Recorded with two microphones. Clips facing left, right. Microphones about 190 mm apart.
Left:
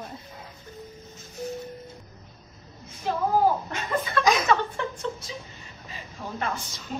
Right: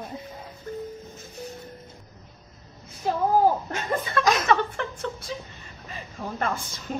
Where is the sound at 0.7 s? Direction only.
55° right (ahead or behind).